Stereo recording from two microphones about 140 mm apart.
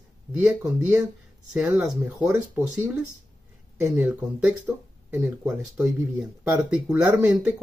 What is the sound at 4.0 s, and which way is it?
Speech, 10° right (ahead or behind).